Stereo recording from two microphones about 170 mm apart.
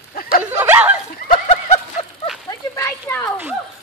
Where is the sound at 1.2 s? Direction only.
35° left (ahead or behind).